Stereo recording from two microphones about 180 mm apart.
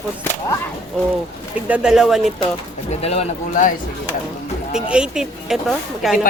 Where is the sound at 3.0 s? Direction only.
35° left (ahead or behind).